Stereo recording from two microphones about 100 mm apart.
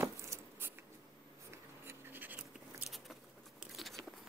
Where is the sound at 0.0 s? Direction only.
25° right (ahead or behind).